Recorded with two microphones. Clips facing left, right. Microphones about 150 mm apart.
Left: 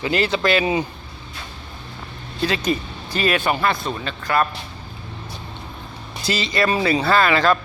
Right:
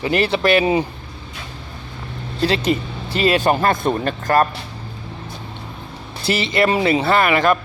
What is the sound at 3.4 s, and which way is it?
A man's voice, 45° right (ahead or behind).